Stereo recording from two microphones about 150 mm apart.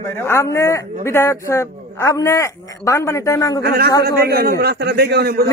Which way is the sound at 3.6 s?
90° right.